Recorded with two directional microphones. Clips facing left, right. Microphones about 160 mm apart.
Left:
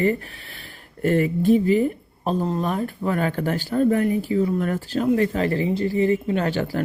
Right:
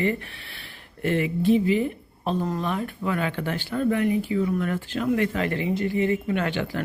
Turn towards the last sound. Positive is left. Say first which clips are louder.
# left 3 dB
turn(degrees=40)  # may be behind; listen again after turning